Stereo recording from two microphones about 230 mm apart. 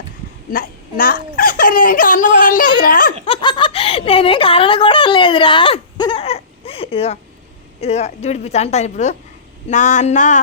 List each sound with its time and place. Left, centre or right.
0.5 s a child's voice: left
3.2 s a woman's voice: left
9.6 s a sound: left